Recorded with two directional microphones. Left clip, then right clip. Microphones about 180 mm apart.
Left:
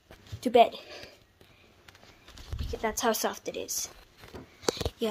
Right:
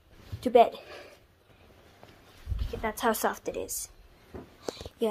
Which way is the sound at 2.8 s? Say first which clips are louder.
Even; 10° left (ahead or behind).